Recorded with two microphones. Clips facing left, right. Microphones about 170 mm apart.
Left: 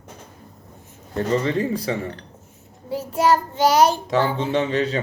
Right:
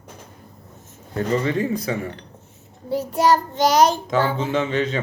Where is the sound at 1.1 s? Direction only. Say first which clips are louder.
Even; 30° left (ahead or behind).